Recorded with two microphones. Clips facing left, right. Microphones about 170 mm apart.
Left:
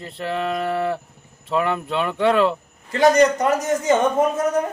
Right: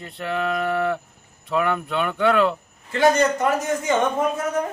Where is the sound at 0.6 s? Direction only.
30° left (ahead or behind).